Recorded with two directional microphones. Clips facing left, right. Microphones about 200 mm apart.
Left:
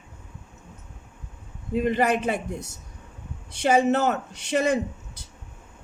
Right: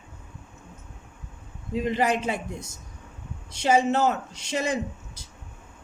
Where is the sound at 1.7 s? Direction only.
55° left (ahead or behind).